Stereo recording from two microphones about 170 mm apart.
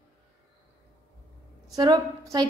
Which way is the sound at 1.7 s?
20° right (ahead or behind).